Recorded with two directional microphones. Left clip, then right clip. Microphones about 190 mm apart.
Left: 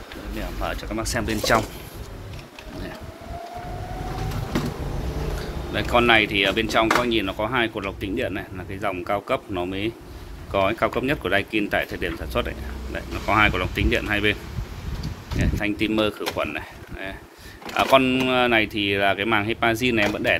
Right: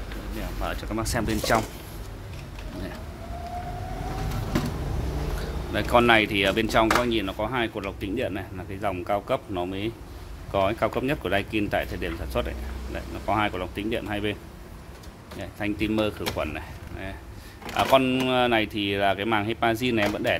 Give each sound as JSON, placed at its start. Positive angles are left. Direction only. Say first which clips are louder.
{"t": 0.7, "sound": "speech", "louder": "left 2 dB", "side_deg": -25}
{"t": 5.7, "sound": "speech", "louder": "left 1 dB", "side_deg": -30}
{"t": 7.1, "sound": "speech", "louder": "left 3 dB", "side_deg": -15}
{"t": 15.4, "sound": "speech", "louder": "left 4 dB", "side_deg": -10}